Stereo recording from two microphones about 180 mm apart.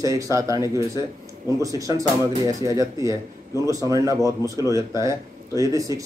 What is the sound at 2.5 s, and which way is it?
Speech, 20° right (ahead or behind).